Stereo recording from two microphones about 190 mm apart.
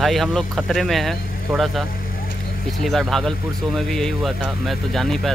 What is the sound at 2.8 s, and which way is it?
Speech, centre (ahead or behind).